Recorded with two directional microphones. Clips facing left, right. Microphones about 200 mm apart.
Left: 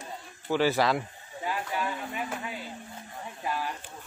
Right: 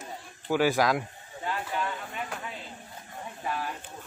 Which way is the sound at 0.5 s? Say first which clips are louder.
Right 1 dB; 10° right (ahead or behind).